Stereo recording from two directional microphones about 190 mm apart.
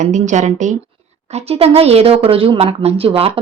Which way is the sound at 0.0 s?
40° right (ahead or behind).